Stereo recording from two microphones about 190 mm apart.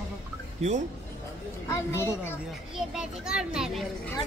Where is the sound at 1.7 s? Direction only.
15° left (ahead or behind).